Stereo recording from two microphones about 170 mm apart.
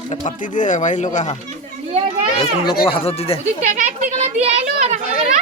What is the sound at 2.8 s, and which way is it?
Speech, 35° left (ahead or behind).